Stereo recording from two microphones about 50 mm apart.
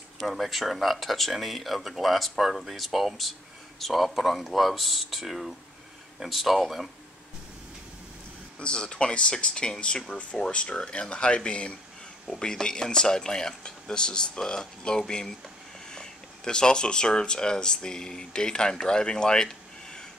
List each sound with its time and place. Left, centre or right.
0.2 s speech: centre
8.5 s speech: centre